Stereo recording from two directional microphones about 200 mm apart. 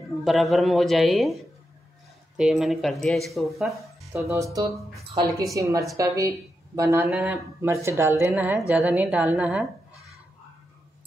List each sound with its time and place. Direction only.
0.2 s speech: centre (ahead or behind)
4.2 s a woman's voice: 15° right (ahead or behind)